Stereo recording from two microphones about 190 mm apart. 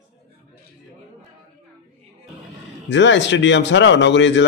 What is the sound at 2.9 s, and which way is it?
Speech, 70° left (ahead or behind).